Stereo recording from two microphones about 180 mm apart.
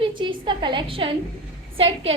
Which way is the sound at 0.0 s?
25° right (ahead or behind).